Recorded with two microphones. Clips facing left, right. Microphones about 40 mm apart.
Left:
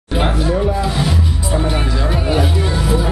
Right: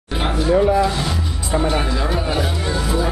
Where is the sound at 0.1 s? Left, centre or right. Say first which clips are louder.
Left 3 dB; centre.